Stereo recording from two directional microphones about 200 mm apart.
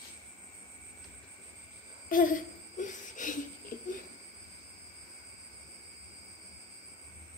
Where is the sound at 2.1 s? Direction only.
40° left (ahead or behind).